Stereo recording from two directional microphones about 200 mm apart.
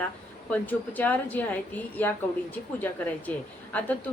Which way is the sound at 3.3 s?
5° left (ahead or behind).